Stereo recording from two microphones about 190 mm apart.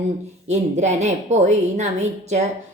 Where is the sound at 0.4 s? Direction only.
35° right (ahead or behind).